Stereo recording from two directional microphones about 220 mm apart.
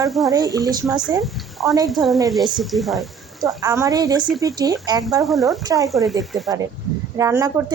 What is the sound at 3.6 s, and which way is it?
A woman's voice, 15° right (ahead or behind).